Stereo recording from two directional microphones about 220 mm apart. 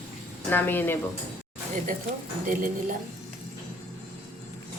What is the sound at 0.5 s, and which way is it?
Speech, 10° left (ahead or behind).